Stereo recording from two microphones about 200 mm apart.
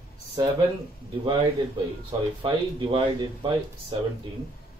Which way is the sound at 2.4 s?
25° right (ahead or behind).